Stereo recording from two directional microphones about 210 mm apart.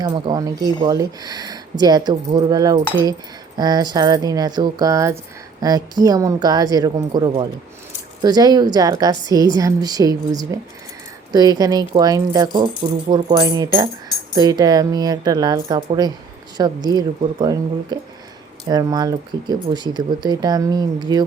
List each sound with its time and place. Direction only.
0.0 s a woman's voice: 20° right (ahead or behind)